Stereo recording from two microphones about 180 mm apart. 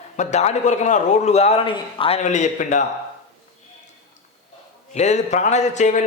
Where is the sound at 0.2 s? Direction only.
40° left (ahead or behind).